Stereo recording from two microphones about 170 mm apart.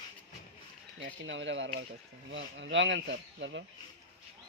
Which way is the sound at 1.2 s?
90° right.